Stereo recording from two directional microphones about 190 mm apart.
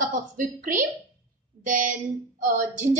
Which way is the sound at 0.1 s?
45° right (ahead or behind).